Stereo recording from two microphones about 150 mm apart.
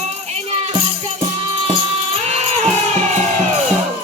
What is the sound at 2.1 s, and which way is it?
Music, 45° right (ahead or behind).